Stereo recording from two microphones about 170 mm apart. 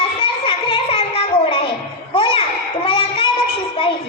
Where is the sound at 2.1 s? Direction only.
30° left (ahead or behind).